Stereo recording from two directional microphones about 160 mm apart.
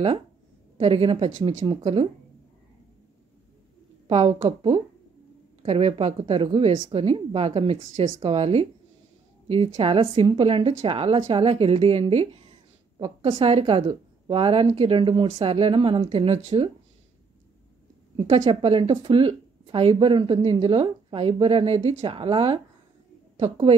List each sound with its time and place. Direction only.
0.7 s a woman's voice: 35° right (ahead or behind)
4.1 s a woman's voice: 40° right (ahead or behind)
18.2 s a woman's voice: 40° right (ahead or behind)